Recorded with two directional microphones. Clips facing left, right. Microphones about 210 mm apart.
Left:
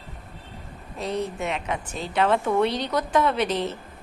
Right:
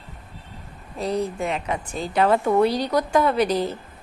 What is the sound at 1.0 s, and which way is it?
Speech, 35° right (ahead or behind).